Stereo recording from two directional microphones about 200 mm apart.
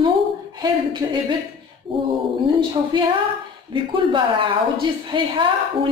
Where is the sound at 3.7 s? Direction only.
25° right (ahead or behind).